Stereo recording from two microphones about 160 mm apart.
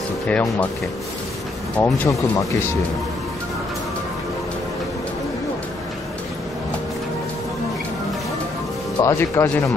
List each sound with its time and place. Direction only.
0.3 s speech: 5° left (ahead or behind)
1.8 s speech: 20° left (ahead or behind)
9.0 s speech: 20° left (ahead or behind)